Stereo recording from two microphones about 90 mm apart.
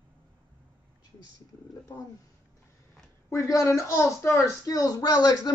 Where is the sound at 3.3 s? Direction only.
35° left (ahead or behind).